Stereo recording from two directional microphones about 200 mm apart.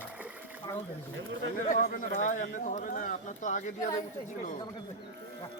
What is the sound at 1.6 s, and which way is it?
Speech, 40° left (ahead or behind).